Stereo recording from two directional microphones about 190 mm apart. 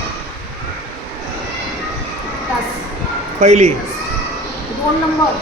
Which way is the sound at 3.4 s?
40° right (ahead or behind).